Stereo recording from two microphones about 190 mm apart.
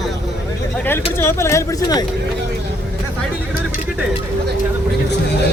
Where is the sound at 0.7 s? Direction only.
10° left (ahead or behind).